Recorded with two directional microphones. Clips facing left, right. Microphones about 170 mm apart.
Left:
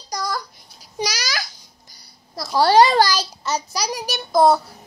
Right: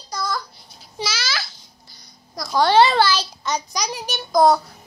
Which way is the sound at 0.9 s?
40° left (ahead or behind).